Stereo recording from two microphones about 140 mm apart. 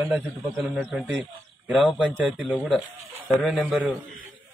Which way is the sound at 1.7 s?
Centre (ahead or behind).